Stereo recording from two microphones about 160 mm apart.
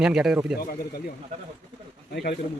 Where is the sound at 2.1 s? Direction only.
90° left.